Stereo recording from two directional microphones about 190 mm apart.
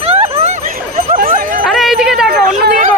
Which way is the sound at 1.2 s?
45° right (ahead or behind).